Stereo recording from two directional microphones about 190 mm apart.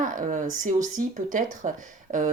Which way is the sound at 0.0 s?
45° right (ahead or behind).